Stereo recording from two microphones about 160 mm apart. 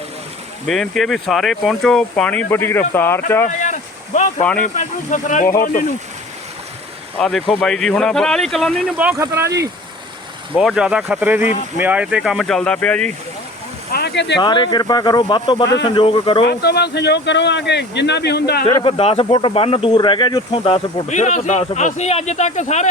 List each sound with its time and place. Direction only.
0.7 s speech: centre (ahead or behind)
3.6 s a sound: 50° left (ahead or behind)
4.6 s speech: 50° left (ahead or behind)
7.2 s speech: centre (ahead or behind)
9.0 s speech: 15° right (ahead or behind)
10.6 s speech: 5° right (ahead or behind)
13.9 s speech: 90° left
14.3 s speech: 30° left (ahead or behind)
15.6 s speech: 90° left
16.0 s speech: 30° left (ahead or behind)
16.5 s speech: 90° left
18.6 s speech: 35° left (ahead or behind)
21.1 s speech: 50° left (ahead or behind)